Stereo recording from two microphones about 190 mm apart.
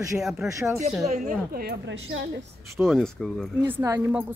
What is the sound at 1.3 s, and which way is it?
Speech, 55° right (ahead or behind).